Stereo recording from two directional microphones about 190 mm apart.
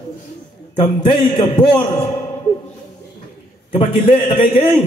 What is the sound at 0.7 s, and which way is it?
Speech, 25° left (ahead or behind).